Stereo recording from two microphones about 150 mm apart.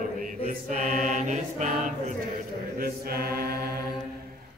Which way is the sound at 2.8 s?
90° right.